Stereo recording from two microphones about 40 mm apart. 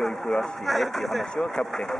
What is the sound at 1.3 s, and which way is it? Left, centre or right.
Speech, centre.